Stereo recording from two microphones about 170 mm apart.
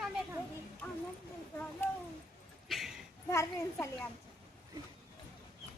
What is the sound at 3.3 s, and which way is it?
Speech, 15° left (ahead or behind).